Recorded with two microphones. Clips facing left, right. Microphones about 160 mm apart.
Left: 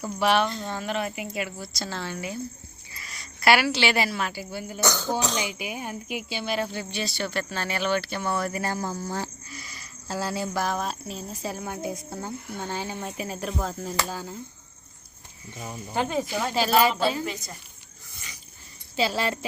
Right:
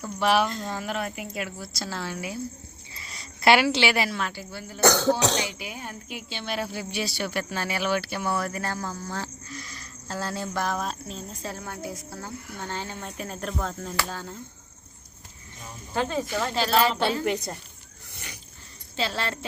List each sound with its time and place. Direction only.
0.0 s cricket: centre (ahead or behind)
2.9 s a sound: 25° right (ahead or behind)
3.9 s speech: centre (ahead or behind)
4.8 s speech: 70° right (ahead or behind)
5.5 s cricket: 15° left (ahead or behind); by 8.6 s centre (ahead or behind)
8.6 s speech: 15° left (ahead or behind)
16.0 s speech: 15° left (ahead or behind)
17.2 s a woman's voice: 65° right (ahead or behind)
18.9 s speech: 10° left (ahead or behind)